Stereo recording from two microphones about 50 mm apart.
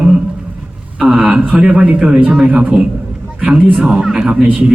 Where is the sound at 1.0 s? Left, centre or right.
Centre.